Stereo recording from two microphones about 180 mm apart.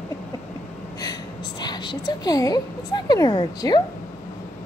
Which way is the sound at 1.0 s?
25° left (ahead or behind).